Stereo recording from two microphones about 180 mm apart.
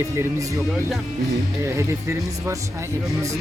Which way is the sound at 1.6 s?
15° right (ahead or behind).